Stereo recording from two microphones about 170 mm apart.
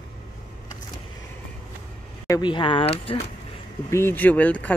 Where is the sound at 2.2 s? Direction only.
25° left (ahead or behind).